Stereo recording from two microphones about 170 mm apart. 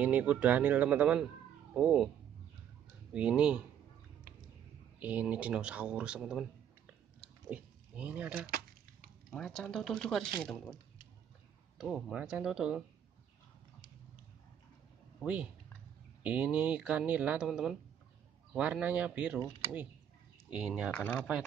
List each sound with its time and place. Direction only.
0.0 s speech: 10° right (ahead or behind)
3.1 s speech: 5° right (ahead or behind)
5.0 s speech: 10° right (ahead or behind)
7.4 s speech: 5° right (ahead or behind)
8.5 s a sound: 60° right (ahead or behind)
9.3 s speech: centre (ahead or behind)
11.8 s speech: 5° right (ahead or behind)
15.1 s speech: 5° right (ahead or behind)
20.5 s speech: 5° right (ahead or behind)
20.9 s speech: 10° left (ahead or behind)